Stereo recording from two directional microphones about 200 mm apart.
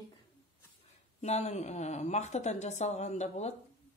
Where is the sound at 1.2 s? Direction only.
35° left (ahead or behind).